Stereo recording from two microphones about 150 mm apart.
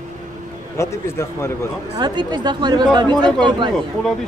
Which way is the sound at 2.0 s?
30° right (ahead or behind).